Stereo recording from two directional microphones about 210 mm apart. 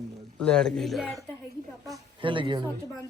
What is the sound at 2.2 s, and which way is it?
Speech, 25° right (ahead or behind).